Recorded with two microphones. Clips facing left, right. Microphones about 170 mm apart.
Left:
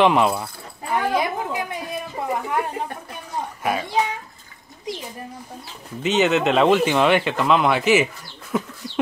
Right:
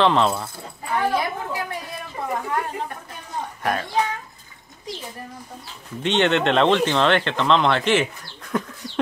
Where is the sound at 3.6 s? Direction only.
5° left (ahead or behind).